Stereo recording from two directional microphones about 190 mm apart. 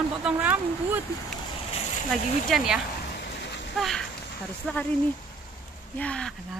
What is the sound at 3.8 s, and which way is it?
Speech, centre (ahead or behind).